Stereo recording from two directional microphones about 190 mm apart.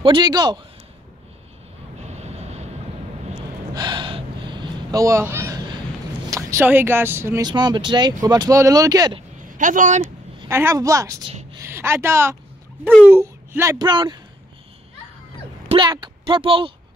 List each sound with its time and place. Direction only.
0.0 s speech: 25° right (ahead or behind)
2.0 s vehicle: 35° right (ahead or behind)
3.7 s a sound: 25° right (ahead or behind)
6.3 s speech: 10° right (ahead or behind)
9.5 s a man's voice: 45° right (ahead or behind)
10.5 s a woman's voice: 15° right (ahead or behind)
15.7 s speech: 25° right (ahead or behind)